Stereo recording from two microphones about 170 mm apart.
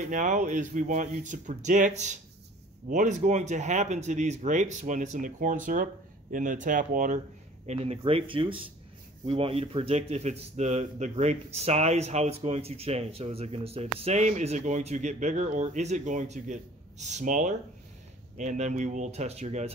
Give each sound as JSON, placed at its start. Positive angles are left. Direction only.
{"t": 0.0, "sound": "speech", "side_deg": -50}
{"t": 7.6, "sound": "speech", "side_deg": -40}